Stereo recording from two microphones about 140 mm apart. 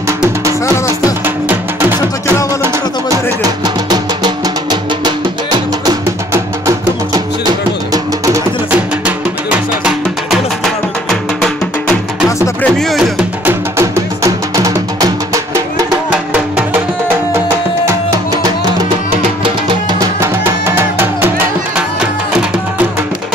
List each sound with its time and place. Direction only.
1.2 s music: 15° right (ahead or behind)
2.6 s music: 25° right (ahead or behind)
7.4 s music: 25° right (ahead or behind)
12.6 s music: 5° left (ahead or behind)
13.5 s music: 20° right (ahead or behind)
17.8 s music: 25° right (ahead or behind)
20.0 s music: 20° right (ahead or behind)